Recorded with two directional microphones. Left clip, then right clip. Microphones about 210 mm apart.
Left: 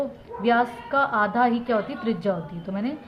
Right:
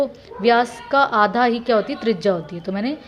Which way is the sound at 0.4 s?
35° right (ahead or behind).